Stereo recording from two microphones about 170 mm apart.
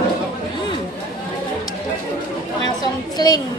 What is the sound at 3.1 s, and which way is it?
Speech, 25° left (ahead or behind).